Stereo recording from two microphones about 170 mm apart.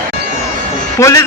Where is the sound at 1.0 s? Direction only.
20° left (ahead or behind).